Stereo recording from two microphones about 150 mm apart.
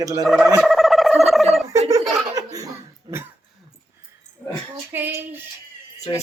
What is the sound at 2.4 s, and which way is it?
Laughter, 20° right (ahead or behind).